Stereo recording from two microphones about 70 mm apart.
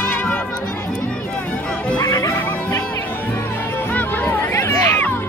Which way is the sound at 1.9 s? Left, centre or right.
Left.